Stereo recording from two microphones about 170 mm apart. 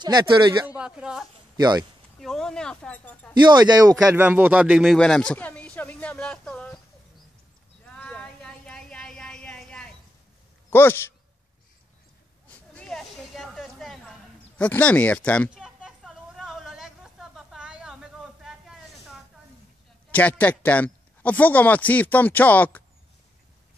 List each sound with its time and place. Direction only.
0.0 s speech: 25° right (ahead or behind)
0.7 s speech: 5° right (ahead or behind)
1.6 s speech: 25° right (ahead or behind)
2.1 s speech: 5° left (ahead or behind)
3.4 s speech: 25° right (ahead or behind); by 6.8 s 5° left (ahead or behind)
7.8 s a sound: 5° left (ahead or behind)
10.7 s a man's voice: 15° left (ahead or behind)
12.7 s a sound: 5° left (ahead or behind)
14.6 s a man's voice: 10° left (ahead or behind)
15.5 s a sound: 5° right (ahead or behind)
20.1 s a man's voice: 10° left (ahead or behind)